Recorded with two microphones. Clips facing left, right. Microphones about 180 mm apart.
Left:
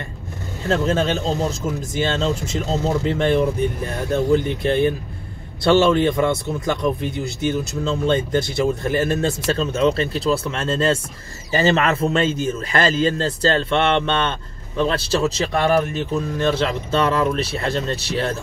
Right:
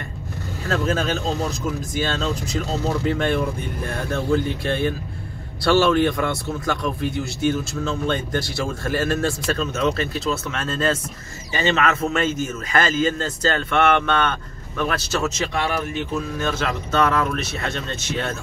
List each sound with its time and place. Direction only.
0.7 s a man's voice: 25° left (ahead or behind)